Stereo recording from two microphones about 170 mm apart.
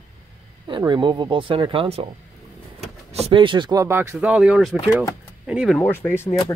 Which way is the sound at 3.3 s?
30° right (ahead or behind).